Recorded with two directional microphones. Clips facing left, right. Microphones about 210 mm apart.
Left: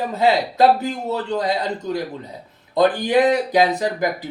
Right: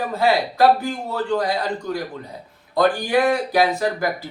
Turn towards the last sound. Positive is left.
turn(degrees=20)  # may be behind; listen again after turning